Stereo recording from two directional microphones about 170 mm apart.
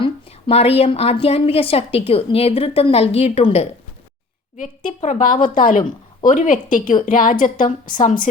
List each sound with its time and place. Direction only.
0.0 s a woman's voice: 35° left (ahead or behind)
4.5 s a woman's voice: 50° left (ahead or behind)